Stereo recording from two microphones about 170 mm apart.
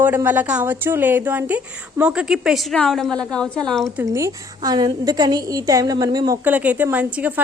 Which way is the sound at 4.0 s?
20° right (ahead or behind).